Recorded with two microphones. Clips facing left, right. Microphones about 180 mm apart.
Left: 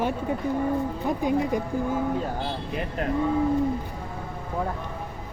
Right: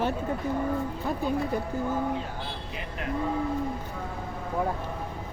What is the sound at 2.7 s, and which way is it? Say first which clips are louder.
Speech: left 7 dB; 50° left (ahead or behind).